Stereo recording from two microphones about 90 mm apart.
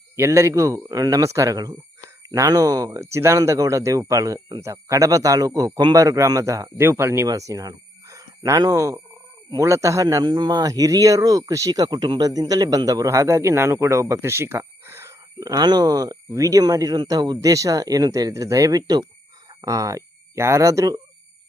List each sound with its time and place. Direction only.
0.2 s speech: 30° right (ahead or behind)
10.2 s speech: 55° right (ahead or behind); by 15.1 s 30° right (ahead or behind)
15.4 s speech: 45° right (ahead or behind)